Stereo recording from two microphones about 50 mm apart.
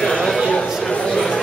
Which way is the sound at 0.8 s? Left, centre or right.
Centre.